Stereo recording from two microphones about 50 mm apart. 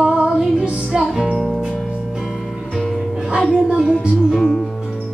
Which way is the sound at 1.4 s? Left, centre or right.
Centre.